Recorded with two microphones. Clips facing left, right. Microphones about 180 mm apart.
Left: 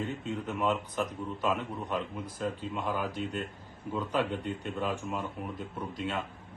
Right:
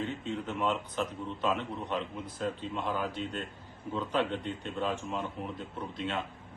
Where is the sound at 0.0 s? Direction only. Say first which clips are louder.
Even; 10° left (ahead or behind).